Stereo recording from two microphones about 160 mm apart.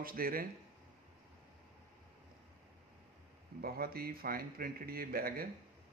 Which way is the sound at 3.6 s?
70° right (ahead or behind).